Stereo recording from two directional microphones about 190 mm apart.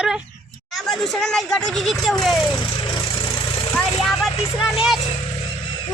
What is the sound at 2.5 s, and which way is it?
Vehicle, 25° left (ahead or behind).